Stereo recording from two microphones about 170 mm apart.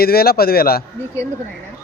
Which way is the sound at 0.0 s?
65° left (ahead or behind).